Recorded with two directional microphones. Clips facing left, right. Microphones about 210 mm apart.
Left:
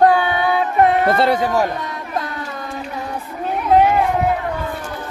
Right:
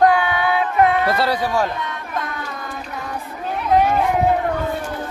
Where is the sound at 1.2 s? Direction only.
25° left (ahead or behind).